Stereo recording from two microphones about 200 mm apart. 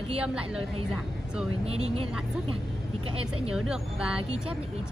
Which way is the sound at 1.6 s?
30° right (ahead or behind).